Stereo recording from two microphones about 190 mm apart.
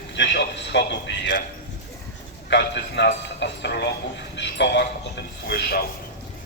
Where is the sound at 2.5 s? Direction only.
65° left (ahead or behind).